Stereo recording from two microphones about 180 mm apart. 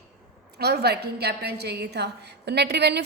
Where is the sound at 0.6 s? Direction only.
65° right (ahead or behind).